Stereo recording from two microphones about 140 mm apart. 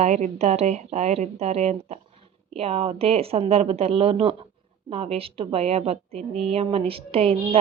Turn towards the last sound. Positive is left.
turn(degrees=-45)  # may be behind; listen again after turning